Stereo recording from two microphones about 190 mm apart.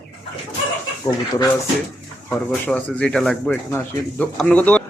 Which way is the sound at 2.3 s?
5° left (ahead or behind).